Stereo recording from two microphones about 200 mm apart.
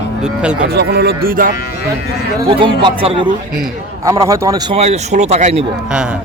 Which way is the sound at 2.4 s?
25° right (ahead or behind).